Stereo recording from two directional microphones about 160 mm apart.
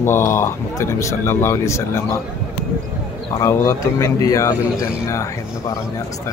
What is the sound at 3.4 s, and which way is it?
Speech, 20° left (ahead or behind).